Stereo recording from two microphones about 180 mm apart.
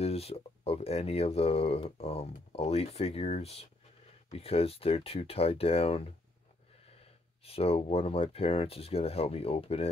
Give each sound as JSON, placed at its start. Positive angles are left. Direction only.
{"t": 0.0, "sound": "speech", "side_deg": 35}
{"t": 7.4, "sound": "speech", "side_deg": 35}